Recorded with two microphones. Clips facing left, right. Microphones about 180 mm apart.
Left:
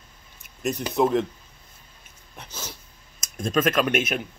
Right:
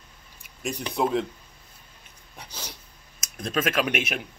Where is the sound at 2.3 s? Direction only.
10° right (ahead or behind).